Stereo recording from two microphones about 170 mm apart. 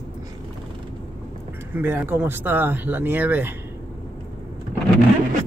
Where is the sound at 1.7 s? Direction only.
10° right (ahead or behind).